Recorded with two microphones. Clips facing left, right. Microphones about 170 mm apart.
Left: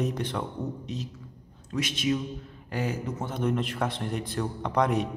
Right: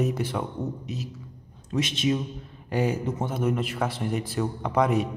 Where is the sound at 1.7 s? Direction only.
25° right (ahead or behind).